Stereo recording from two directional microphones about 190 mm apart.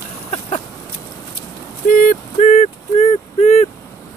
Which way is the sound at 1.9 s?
45° left (ahead or behind).